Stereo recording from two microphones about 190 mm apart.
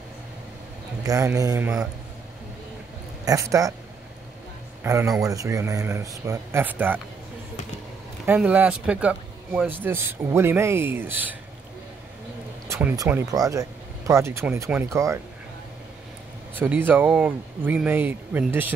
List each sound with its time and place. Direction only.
1.0 s a man's voice: 15° right (ahead or behind)
3.3 s a man's voice: 15° right (ahead or behind)
4.8 s a man's voice: 15° right (ahead or behind)
8.3 s a man's voice: 10° right (ahead or behind)
12.6 s speech: 15° right (ahead or behind)
16.5 s a man's voice: 10° right (ahead or behind)